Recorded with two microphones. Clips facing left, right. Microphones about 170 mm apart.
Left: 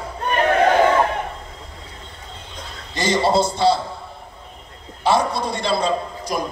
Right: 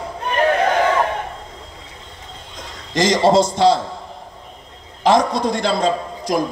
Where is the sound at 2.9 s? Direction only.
90° right.